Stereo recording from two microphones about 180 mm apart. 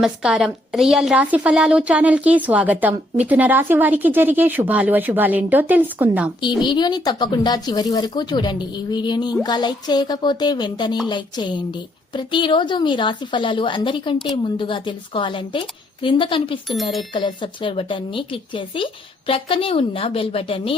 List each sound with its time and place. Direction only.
0.0 s a woman's voice: 5° right (ahead or behind)
6.6 s a woman's voice: 25° left (ahead or behind)